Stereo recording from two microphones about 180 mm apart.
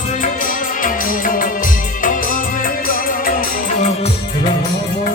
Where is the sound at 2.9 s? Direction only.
50° left (ahead or behind).